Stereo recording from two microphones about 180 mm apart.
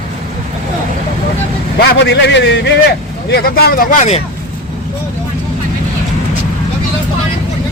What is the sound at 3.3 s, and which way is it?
Speech, 60° left (ahead or behind).